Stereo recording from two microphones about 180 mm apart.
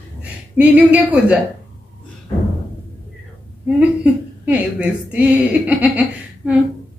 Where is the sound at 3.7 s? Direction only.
10° right (ahead or behind).